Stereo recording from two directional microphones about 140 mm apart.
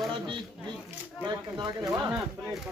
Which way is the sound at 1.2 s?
30° right (ahead or behind).